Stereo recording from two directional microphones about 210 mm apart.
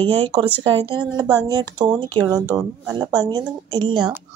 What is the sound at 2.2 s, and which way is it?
A woman's voice, 15° right (ahead or behind).